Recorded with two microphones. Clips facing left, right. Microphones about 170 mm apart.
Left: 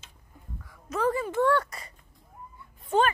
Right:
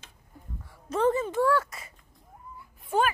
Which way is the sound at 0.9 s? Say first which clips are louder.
Right 2 dB; 25° right (ahead or behind).